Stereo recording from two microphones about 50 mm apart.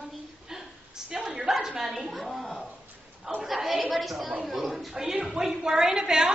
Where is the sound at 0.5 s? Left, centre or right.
Centre.